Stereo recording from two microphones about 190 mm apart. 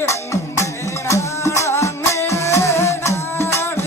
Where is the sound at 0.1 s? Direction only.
15° left (ahead or behind).